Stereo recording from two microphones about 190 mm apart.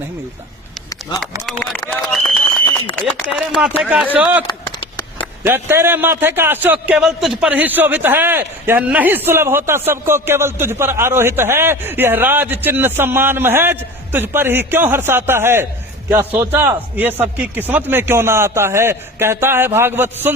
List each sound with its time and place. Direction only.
1.5 s run: centre (ahead or behind)
3.0 s a man's voice: centre (ahead or behind)